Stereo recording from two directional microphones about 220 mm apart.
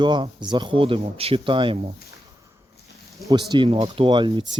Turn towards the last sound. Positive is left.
turn(degrees=-20)  # may be behind; listen again after turning